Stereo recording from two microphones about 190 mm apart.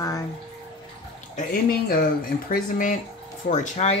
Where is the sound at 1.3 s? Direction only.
50° left (ahead or behind).